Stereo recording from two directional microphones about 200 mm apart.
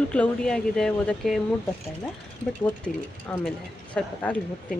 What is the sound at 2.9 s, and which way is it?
Speech, 40° left (ahead or behind).